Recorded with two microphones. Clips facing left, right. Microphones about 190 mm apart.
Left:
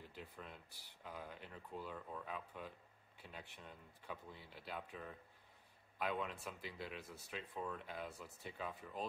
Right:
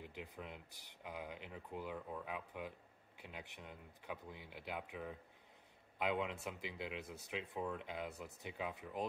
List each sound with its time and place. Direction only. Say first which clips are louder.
0.0 s speech: right 4 dB; 15° right (ahead or behind)